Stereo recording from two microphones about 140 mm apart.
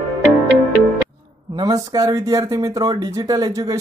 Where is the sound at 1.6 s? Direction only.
25° right (ahead or behind).